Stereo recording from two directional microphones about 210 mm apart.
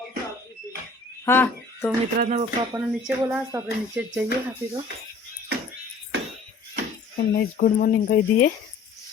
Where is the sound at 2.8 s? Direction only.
5° right (ahead or behind).